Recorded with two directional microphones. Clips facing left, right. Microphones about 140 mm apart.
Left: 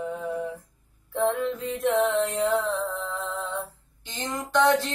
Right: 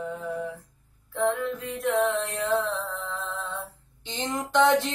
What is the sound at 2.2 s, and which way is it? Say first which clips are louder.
Mantra: left 3 dB; 20° left (ahead or behind).